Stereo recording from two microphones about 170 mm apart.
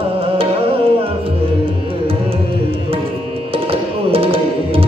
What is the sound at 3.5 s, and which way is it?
Tabla, 35° right (ahead or behind).